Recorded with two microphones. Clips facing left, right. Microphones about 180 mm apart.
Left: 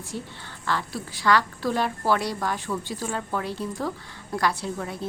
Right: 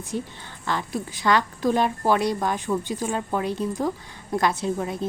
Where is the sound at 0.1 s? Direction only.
15° right (ahead or behind).